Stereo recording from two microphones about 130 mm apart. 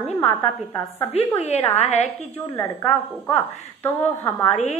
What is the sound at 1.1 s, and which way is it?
A woman's voice, 55° left (ahead or behind).